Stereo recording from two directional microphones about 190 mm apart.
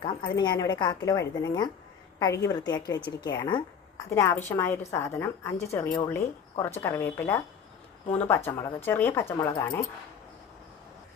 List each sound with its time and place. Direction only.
0.0 s a woman's voice: 25° left (ahead or behind)